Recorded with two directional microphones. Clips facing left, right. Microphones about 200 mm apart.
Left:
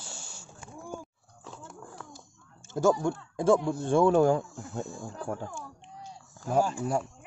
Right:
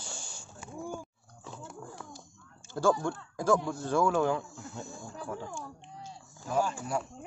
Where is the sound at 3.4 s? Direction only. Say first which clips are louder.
Left 4 dB; 25° left (ahead or behind).